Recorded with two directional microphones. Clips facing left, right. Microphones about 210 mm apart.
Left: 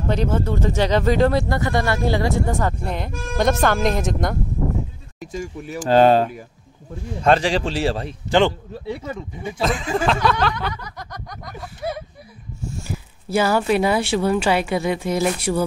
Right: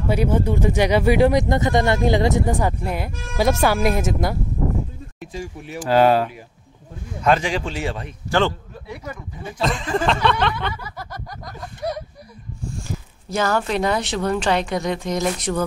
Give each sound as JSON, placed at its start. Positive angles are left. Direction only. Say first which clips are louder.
{"t": 0.1, "sound": "speech", "louder": "right 2 dB", "side_deg": -10}
{"t": 5.2, "sound": "speech", "louder": "left 3 dB", "side_deg": 45}
{"t": 5.9, "sound": "a man's voice", "louder": "left 2 dB", "side_deg": 30}
{"t": 8.3, "sound": "speech", "louder": "left 3 dB", "side_deg": 15}
{"t": 9.6, "sound": "speech", "louder": "even", "side_deg": 0}